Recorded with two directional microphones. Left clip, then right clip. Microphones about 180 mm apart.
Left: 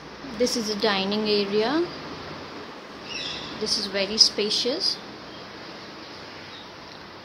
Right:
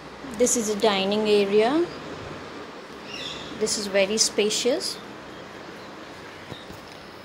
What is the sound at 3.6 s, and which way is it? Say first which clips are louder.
Speech: even; 40° right (ahead or behind).